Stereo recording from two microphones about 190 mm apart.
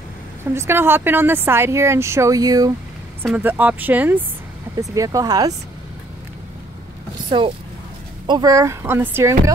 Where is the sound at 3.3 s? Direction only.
10° right (ahead or behind).